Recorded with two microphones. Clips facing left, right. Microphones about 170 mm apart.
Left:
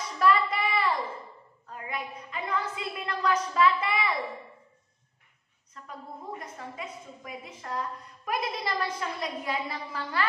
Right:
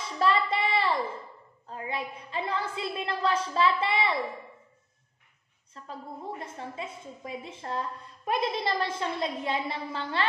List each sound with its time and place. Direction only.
0.2 s child singing: 30° right (ahead or behind)
1.7 s a woman's voice: 30° right (ahead or behind)
5.8 s a woman's voice: 30° right (ahead or behind)